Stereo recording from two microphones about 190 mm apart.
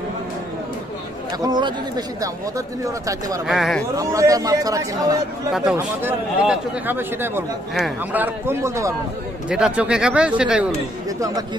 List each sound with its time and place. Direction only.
1.4 s a man's voice: 20° right (ahead or behind)
3.4 s speech: centre (ahead or behind)
3.9 s speech: 15° right (ahead or behind)
5.5 s speech: 5° right (ahead or behind)
11.1 s a man's voice: 20° right (ahead or behind)